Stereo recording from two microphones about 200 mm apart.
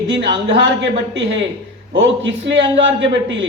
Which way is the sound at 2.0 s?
65° right (ahead or behind).